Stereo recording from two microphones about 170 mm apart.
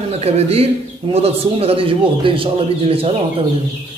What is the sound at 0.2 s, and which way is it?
A man's voice, 35° right (ahead or behind).